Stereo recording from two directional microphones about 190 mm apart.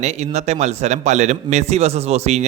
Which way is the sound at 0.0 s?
35° right (ahead or behind).